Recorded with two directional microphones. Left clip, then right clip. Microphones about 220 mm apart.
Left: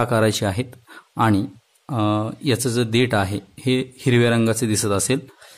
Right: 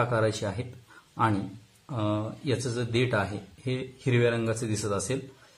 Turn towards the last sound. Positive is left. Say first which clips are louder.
# left 9 dB
turn(degrees=45)  # may be behind; listen again after turning